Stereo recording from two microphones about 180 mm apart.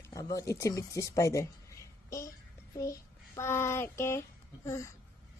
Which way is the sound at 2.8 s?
15° left (ahead or behind).